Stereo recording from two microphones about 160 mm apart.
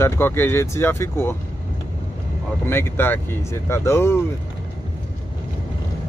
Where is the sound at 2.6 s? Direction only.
15° left (ahead or behind).